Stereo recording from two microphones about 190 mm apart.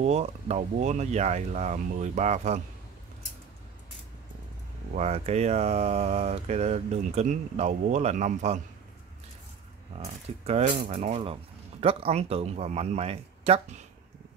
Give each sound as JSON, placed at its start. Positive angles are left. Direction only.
{"t": 0.0, "sound": "speech", "side_deg": -35}
{"t": 4.9, "sound": "speech", "side_deg": -35}
{"t": 9.9, "sound": "speech", "side_deg": -35}